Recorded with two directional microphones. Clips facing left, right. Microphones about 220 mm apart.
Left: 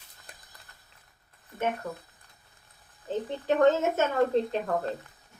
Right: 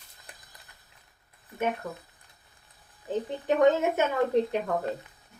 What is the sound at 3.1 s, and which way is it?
Speech, 15° right (ahead or behind).